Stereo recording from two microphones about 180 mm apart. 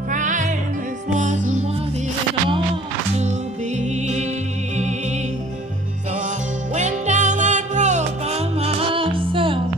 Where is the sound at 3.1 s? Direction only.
40° right (ahead or behind).